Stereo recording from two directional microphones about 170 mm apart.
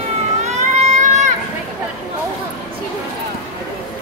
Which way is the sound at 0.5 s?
40° right (ahead or behind).